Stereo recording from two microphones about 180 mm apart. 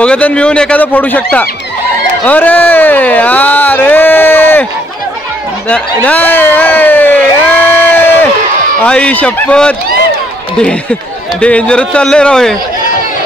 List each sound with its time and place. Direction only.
0.0 s a man's voice: 5° left (ahead or behind)
6.0 s speech: 10° left (ahead or behind)
7.6 s a sound: 10° left (ahead or behind)
8.8 s a man's voice: 5° left (ahead or behind)